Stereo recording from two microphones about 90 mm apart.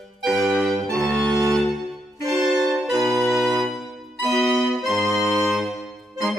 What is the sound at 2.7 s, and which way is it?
Music, centre (ahead or behind).